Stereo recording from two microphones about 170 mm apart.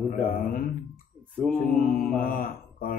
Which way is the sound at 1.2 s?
10° left (ahead or behind).